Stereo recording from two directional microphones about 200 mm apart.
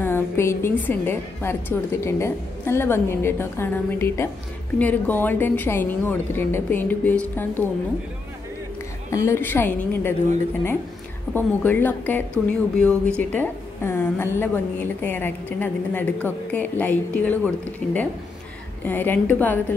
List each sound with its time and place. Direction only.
0.0 s a woman's voice: 10° left (ahead or behind)
9.1 s a woman's voice: 15° left (ahead or behind)
11.3 s a woman's voice: 10° left (ahead or behind)